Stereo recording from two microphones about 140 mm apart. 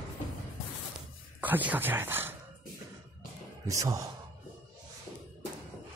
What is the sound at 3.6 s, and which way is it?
Speech, 20° right (ahead or behind).